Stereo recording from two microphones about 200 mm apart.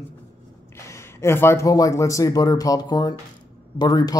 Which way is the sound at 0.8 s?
15° left (ahead or behind).